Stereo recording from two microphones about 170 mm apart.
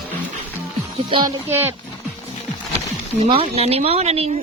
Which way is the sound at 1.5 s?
10° right (ahead or behind).